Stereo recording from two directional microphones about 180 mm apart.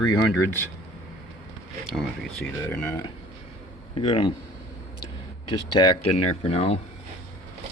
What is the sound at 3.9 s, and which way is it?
Speech, 30° left (ahead or behind).